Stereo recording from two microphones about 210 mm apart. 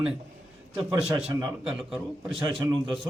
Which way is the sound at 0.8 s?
5° right (ahead or behind).